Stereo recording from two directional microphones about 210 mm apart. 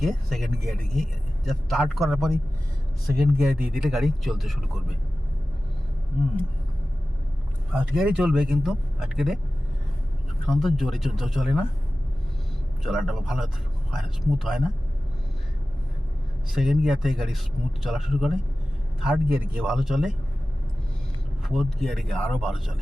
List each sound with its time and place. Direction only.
0.0 s speech: centre (ahead or behind)
7.7 s speech: 5° right (ahead or behind)
10.4 s speech: centre (ahead or behind)
12.8 s speech: centre (ahead or behind)
16.5 s speech: centre (ahead or behind)
21.4 s speech: centre (ahead or behind)